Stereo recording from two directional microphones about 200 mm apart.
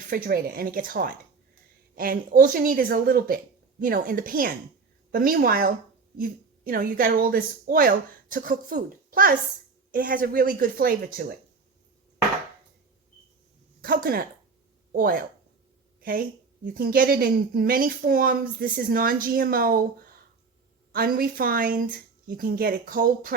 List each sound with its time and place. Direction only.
0.1 s a woman's voice: 45° right (ahead or behind)
13.8 s a woman's voice: 45° right (ahead or behind)
16.0 s a sound: 45° right (ahead or behind)
16.7 s a woman's voice: 50° right (ahead or behind)
20.9 s a woman's voice: 50° right (ahead or behind)